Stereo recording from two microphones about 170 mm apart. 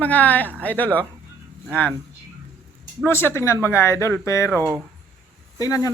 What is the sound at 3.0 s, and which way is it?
Speech, 10° left (ahead or behind).